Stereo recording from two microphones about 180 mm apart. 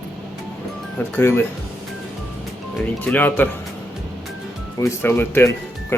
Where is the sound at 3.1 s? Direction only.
10° left (ahead or behind).